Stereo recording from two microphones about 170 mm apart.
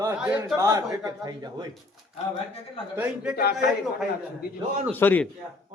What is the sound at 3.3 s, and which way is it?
Speech, 65° left (ahead or behind).